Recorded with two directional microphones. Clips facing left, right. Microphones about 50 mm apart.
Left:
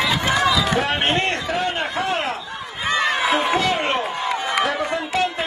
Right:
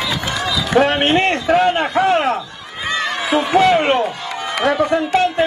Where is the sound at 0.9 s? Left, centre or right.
Centre.